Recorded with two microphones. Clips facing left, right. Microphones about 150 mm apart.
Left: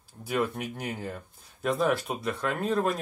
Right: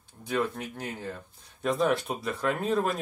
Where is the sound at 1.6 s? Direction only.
Centre (ahead or behind).